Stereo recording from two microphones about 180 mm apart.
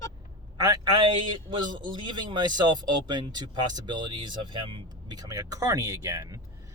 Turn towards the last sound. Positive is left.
turn(degrees=-20)  # may be behind; listen again after turning